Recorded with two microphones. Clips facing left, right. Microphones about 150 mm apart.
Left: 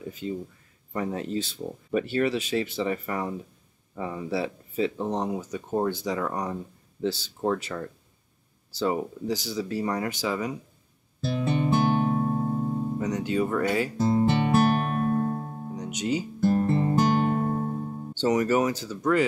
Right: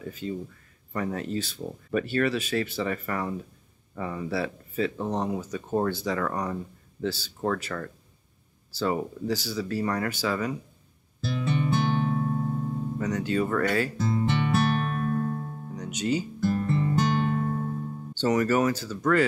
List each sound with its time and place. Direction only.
0.0 s speech: 20° left (ahead or behind)
11.2 s music: 35° left (ahead or behind)
13.0 s speech: 15° left (ahead or behind)
13.9 s music: 35° left (ahead or behind)
15.7 s music: 15° left (ahead or behind)
16.3 s music: 35° left (ahead or behind)
18.1 s speech: 15° left (ahead or behind)